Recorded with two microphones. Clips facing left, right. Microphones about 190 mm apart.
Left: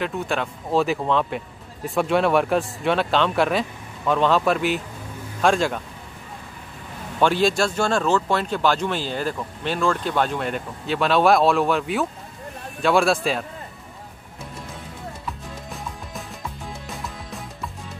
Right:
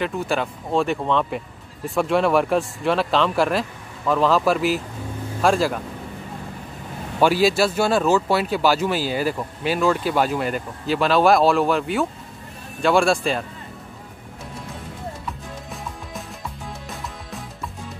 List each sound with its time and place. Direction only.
0.0 s speech: centre (ahead or behind)
7.2 s speech: 5° right (ahead or behind)
15.2 s music: centre (ahead or behind)